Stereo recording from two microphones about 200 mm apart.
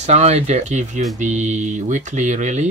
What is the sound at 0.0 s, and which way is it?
Speech, 35° right (ahead or behind).